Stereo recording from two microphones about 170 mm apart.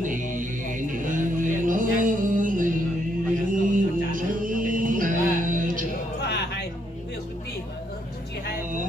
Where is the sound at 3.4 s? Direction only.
50° right (ahead or behind).